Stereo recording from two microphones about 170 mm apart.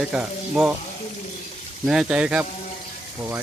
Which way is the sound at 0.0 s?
5° right (ahead or behind).